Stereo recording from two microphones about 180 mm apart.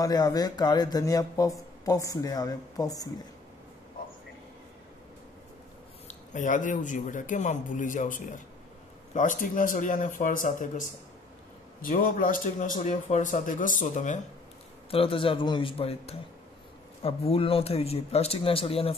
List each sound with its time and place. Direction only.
0.0 s speech: 20° left (ahead or behind)
6.0 s a man's voice: 45° left (ahead or behind)
14.9 s speech: 30° left (ahead or behind)